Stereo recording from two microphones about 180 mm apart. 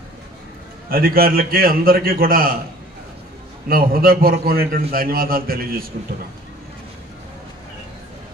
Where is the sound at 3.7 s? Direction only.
55° right (ahead or behind).